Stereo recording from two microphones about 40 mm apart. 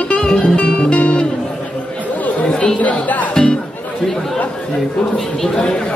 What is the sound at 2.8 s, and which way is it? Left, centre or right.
Music, left.